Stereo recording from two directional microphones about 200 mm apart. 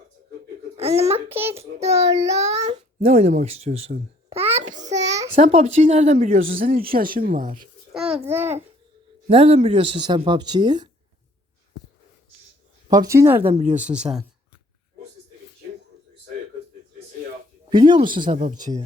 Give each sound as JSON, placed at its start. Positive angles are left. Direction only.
{"t": 0.8, "sound": "a sound", "side_deg": -30}
{"t": 1.3, "sound": "a child's voice", "side_deg": -10}
{"t": 1.5, "sound": "a child's voice", "side_deg": -30}
{"t": 4.7, "sound": "child singing", "side_deg": -35}
{"t": 5.3, "sound": "speech", "side_deg": -30}
{"t": 7.9, "sound": "a child's voice", "side_deg": -5}
{"t": 9.3, "sound": "speech", "side_deg": -30}
{"t": 12.9, "sound": "a child's voice", "side_deg": -15}
{"t": 13.4, "sound": "speech", "side_deg": -30}
{"t": 13.7, "sound": "speech", "side_deg": -5}
{"t": 17.7, "sound": "speech", "side_deg": -25}